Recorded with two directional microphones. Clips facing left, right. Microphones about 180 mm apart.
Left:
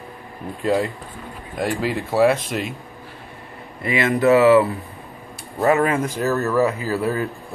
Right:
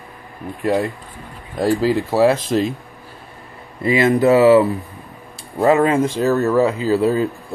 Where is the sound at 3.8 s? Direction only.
30° right (ahead or behind).